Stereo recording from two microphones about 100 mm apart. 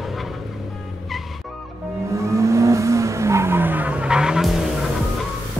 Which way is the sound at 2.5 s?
30° right (ahead or behind).